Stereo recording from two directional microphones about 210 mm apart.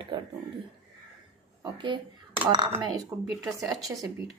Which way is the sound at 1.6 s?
20° right (ahead or behind).